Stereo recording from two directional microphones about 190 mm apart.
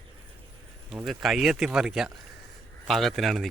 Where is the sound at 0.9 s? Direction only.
Centre (ahead or behind).